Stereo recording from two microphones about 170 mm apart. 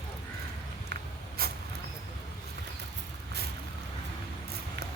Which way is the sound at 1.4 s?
65° right (ahead or behind).